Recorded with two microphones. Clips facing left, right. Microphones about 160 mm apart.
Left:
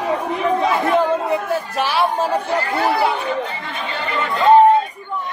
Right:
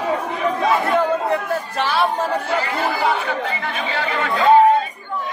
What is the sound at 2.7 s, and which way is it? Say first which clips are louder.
Speech: left 5 dB; 75° left (ahead or behind).